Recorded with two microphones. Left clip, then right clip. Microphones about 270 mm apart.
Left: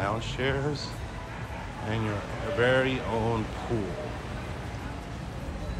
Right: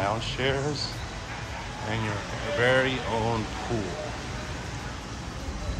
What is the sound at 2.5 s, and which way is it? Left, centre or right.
Speech, centre.